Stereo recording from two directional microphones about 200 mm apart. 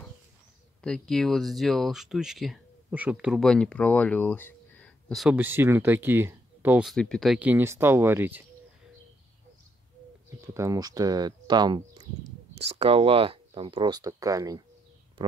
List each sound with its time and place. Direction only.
0.8 s speech: 5° left (ahead or behind)
5.3 s speech: 10° right (ahead or behind)
10.4 s speech: 15° right (ahead or behind)